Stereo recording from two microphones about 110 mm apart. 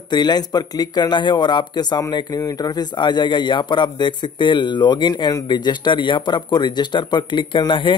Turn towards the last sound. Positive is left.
turn(degrees=45)  # may be behind; listen again after turning